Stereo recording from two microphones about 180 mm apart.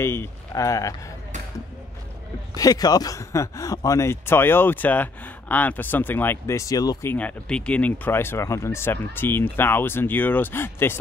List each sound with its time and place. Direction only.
0.0 s speech: 15° left (ahead or behind)
2.5 s speech: 20° left (ahead or behind)